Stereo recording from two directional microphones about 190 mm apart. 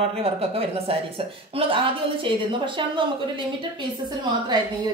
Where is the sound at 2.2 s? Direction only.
25° right (ahead or behind).